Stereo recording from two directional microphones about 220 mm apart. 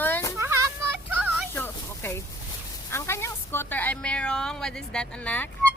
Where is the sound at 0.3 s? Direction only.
15° right (ahead or behind).